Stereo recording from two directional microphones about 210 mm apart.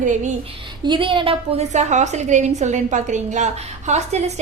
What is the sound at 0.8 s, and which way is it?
A woman's voice, 20° right (ahead or behind).